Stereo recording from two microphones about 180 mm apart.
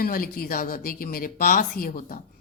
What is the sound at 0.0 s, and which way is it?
Speech, 55° left (ahead or behind).